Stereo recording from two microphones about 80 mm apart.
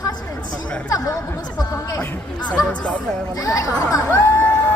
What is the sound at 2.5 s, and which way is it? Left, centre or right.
Speech, centre.